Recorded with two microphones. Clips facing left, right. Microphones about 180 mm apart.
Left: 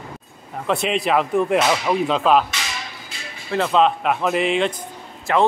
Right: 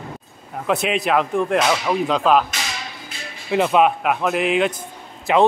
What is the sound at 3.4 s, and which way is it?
Speech, 15° right (ahead or behind).